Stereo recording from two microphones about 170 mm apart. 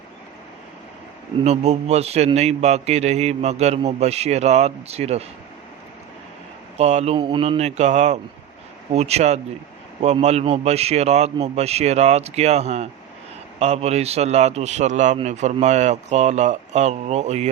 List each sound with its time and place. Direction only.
1.5 s a man's voice: 40° right (ahead or behind)
6.7 s a man's voice: 40° right (ahead or behind)